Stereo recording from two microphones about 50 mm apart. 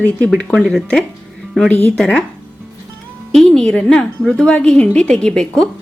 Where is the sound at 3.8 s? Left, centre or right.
Centre.